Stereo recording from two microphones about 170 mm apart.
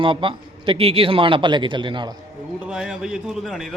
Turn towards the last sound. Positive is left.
turn(degrees=0)  # may be behind; listen again after turning